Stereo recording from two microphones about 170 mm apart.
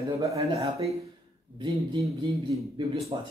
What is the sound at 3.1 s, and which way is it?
Speech, 25° right (ahead or behind).